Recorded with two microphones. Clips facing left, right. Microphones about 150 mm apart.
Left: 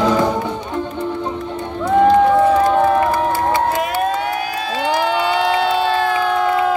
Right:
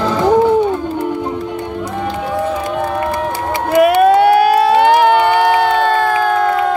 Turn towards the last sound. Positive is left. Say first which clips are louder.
# right 5 dB
turn(degrees=-60)  # may be behind; listen again after turning